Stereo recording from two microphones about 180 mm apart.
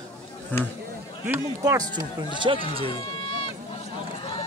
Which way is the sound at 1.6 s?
20° right (ahead or behind).